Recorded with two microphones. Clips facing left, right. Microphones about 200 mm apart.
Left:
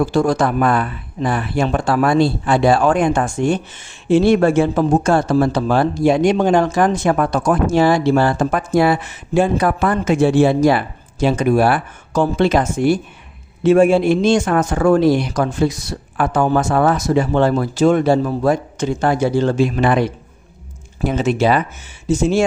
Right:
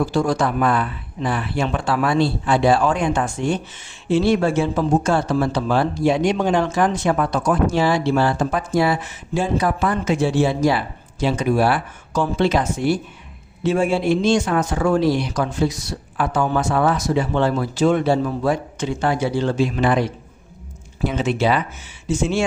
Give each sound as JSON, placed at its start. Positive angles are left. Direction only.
{"t": 0.1, "sound": "speech", "side_deg": 50}
{"t": 21.0, "sound": "speech", "side_deg": 45}